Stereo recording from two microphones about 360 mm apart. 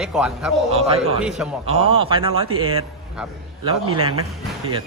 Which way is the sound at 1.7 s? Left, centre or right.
Centre.